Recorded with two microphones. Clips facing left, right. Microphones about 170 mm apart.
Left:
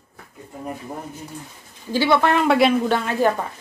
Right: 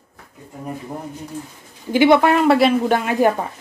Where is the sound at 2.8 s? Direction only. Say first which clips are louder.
Right 3 dB; 15° right (ahead or behind).